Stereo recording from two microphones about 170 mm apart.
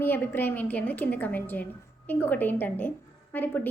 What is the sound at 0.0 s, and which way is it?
A woman's voice, 10° left (ahead or behind).